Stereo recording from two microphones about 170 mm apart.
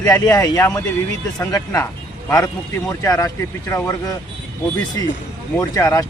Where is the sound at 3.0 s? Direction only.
20° left (ahead or behind).